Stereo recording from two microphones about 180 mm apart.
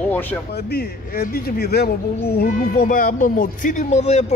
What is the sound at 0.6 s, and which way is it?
Speech, 60° left (ahead or behind).